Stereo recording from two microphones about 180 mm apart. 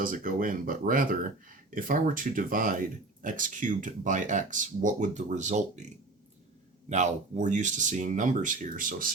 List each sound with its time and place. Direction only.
0.0 s speech: 50° right (ahead or behind)
6.9 s speech: 40° right (ahead or behind)